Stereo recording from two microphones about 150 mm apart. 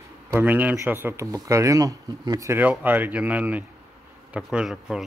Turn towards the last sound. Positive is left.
turn(degrees=-5)  # may be behind; listen again after turning